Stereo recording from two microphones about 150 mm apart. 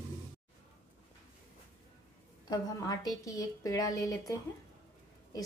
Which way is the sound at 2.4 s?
25° left (ahead or behind).